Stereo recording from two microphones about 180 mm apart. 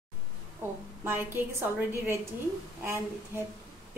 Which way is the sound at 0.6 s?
10° right (ahead or behind).